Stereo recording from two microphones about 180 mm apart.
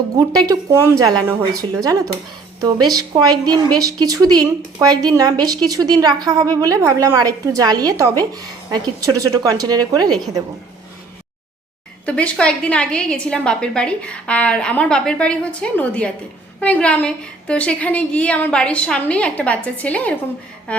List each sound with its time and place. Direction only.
0.4 s a woman's voice: 15° right (ahead or behind)
12.0 s a woman's voice: 5° left (ahead or behind)